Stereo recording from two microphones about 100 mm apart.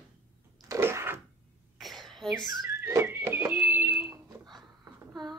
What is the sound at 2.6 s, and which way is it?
Whistling, 25° right (ahead or behind).